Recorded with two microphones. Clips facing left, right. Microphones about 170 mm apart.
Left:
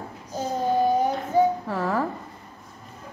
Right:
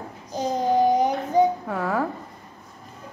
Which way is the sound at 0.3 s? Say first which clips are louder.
Right 2 dB; 15° right (ahead or behind).